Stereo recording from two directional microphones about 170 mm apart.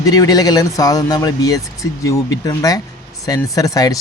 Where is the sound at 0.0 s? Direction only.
20° left (ahead or behind).